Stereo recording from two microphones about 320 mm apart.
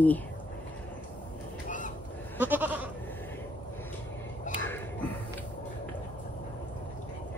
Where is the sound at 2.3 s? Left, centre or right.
Centre.